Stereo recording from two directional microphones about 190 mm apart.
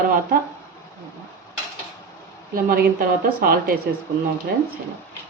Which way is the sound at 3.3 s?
50° right (ahead or behind).